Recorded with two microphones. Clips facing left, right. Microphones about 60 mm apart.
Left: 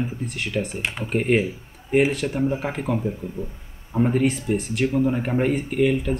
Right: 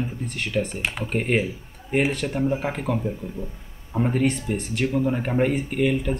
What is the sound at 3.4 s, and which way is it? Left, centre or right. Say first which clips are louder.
Speech: left 2 dB; left.